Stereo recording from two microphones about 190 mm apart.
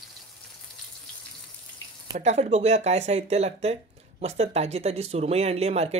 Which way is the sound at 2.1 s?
35° right (ahead or behind).